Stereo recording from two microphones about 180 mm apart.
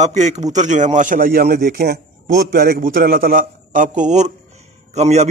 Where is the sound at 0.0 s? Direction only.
40° right (ahead or behind).